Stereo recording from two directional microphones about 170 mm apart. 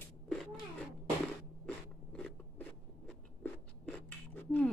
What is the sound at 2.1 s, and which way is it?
Writing, 5° left (ahead or behind).